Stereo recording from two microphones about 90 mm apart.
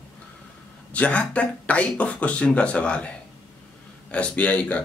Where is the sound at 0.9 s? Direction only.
15° left (ahead or behind).